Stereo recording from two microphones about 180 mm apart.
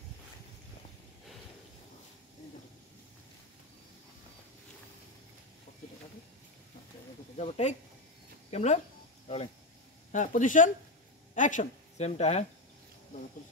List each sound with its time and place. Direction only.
7.3 s speech: 35° left (ahead or behind)
10.1 s speech: 45° left (ahead or behind)